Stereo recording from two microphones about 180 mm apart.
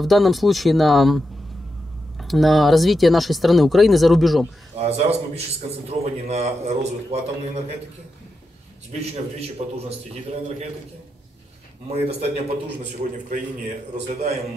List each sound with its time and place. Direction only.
0.0 s speech: centre (ahead or behind)
4.7 s a man's voice: 35° right (ahead or behind)
8.9 s a man's voice: 40° right (ahead or behind)
11.9 s a man's voice: 35° right (ahead or behind)
13.9 s a man's voice: 35° right (ahead or behind)